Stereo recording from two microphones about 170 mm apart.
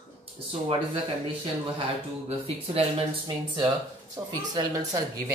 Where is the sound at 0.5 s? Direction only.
35° right (ahead or behind).